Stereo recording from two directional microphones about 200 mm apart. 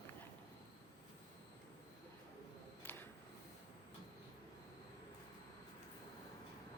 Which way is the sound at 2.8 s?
10° left (ahead or behind).